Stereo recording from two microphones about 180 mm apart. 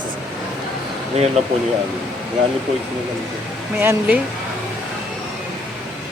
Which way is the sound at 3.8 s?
10° right (ahead or behind).